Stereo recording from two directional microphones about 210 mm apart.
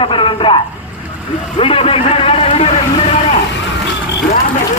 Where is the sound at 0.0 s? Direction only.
25° left (ahead or behind).